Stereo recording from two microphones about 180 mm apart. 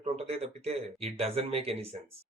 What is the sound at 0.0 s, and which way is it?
Speech, 35° right (ahead or behind).